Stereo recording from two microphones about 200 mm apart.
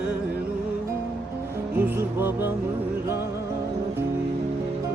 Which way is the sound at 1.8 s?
10° right (ahead or behind).